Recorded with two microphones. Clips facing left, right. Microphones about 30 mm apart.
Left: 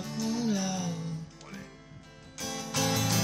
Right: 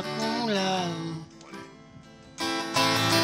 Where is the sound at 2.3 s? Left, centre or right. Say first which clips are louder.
Right 7 dB; right.